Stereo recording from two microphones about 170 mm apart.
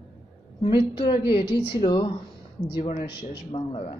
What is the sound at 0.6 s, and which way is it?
A woman's voice, 30° left (ahead or behind).